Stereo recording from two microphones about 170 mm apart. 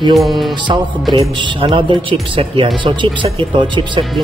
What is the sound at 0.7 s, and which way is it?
Speech, 25° right (ahead or behind).